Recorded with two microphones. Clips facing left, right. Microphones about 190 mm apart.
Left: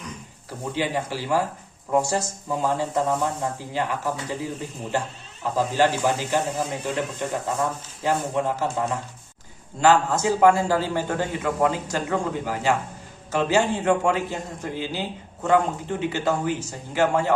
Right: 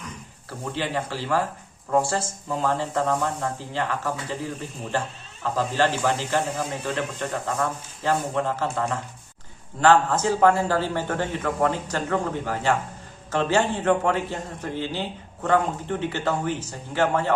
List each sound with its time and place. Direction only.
0.6 s a man's voice: 15° left (ahead or behind)
2.6 s a man's voice: 15° left (ahead or behind)